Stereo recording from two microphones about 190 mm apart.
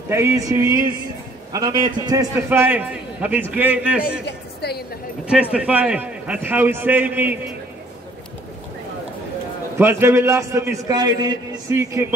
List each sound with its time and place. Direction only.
0.1 s a man's voice: 15° right (ahead or behind)
4.6 s music: 55° left (ahead or behind)
5.2 s a man's voice: 5° right (ahead or behind)
9.8 s a man's voice: 15° right (ahead or behind)